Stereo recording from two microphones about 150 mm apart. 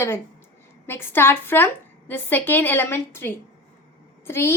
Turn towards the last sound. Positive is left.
turn(degrees=15)  # may be behind; listen again after turning